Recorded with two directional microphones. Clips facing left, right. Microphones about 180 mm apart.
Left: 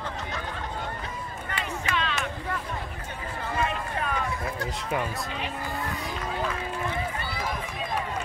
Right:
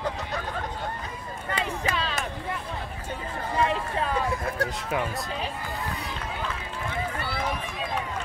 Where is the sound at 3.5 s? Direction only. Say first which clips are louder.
Right 4 dB; 30° right (ahead or behind).